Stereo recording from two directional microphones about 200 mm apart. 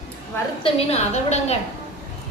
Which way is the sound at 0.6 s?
30° left (ahead or behind).